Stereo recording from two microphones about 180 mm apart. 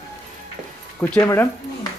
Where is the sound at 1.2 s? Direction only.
15° left (ahead or behind).